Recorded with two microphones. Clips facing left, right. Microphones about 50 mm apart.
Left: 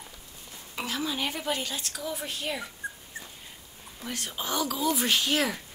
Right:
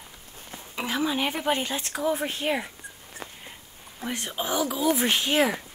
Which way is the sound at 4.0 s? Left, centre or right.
Right.